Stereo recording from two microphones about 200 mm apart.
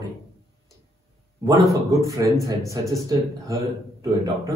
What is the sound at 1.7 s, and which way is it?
A man's voice, 15° right (ahead or behind).